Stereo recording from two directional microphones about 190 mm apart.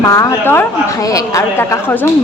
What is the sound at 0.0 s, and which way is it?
A woman's voice, 15° left (ahead or behind).